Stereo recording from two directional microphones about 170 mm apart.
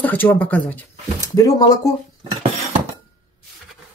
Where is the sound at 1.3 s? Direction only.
20° left (ahead or behind).